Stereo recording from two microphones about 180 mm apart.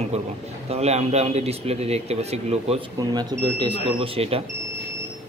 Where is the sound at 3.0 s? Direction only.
20° right (ahead or behind).